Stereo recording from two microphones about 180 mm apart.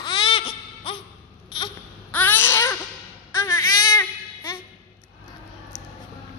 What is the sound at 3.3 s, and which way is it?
Baby cry, 20° left (ahead or behind).